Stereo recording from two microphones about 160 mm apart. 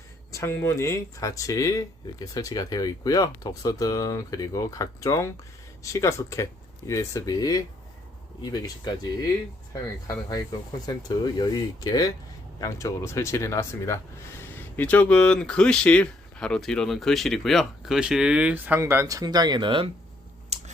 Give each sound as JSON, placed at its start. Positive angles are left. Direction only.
{"t": 0.3, "sound": "speech", "side_deg": 15}
{"t": 10.1, "sound": "speech", "side_deg": 25}
{"t": 20.5, "sound": "a sound", "side_deg": -45}